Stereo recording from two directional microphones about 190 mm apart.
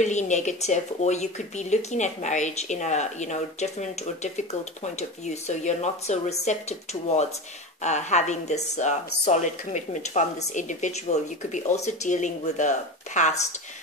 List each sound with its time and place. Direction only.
0.0 s speech: 40° left (ahead or behind)